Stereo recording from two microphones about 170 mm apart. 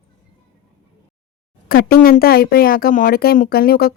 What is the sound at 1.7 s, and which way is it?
Speech, 60° left (ahead or behind).